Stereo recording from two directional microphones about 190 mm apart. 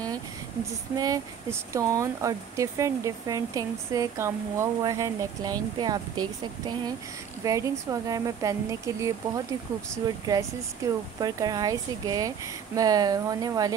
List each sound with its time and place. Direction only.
0.9 s speech: 20° right (ahead or behind)